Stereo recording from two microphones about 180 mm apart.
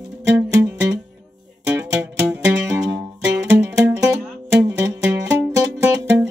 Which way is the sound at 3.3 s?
15° right (ahead or behind).